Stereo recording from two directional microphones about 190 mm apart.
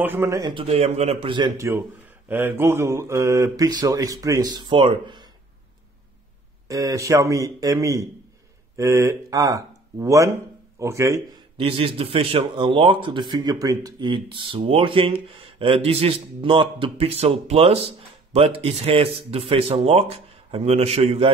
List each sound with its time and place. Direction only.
0.0 s speech: 10° right (ahead or behind)
1.7 s speech: 10° right (ahead or behind)
6.7 s speech: 20° right (ahead or behind)